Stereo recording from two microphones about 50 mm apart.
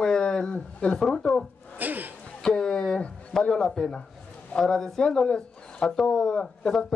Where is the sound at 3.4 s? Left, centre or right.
Centre.